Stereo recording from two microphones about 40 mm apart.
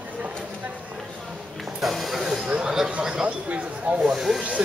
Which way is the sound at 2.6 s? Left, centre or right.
Centre.